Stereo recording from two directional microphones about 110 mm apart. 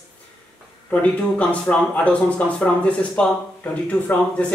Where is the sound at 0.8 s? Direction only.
10° left (ahead or behind).